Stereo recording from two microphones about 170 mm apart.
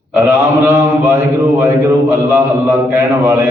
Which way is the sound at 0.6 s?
10° right (ahead or behind).